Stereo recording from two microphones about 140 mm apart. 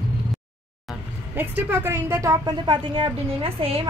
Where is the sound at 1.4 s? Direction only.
15° right (ahead or behind).